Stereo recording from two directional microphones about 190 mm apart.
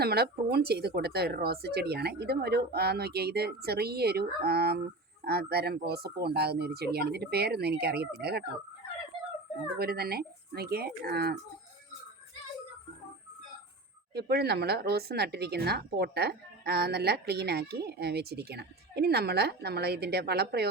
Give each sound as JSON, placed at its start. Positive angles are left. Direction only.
{"t": 0.0, "sound": "speech", "side_deg": -55}
{"t": 9.7, "sound": "speech", "side_deg": -55}
{"t": 14.1, "sound": "speech", "side_deg": -60}